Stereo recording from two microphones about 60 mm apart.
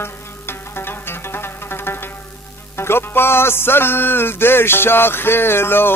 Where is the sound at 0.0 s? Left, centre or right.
Left.